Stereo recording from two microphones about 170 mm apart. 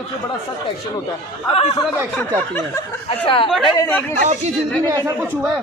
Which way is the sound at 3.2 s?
30° left (ahead or behind).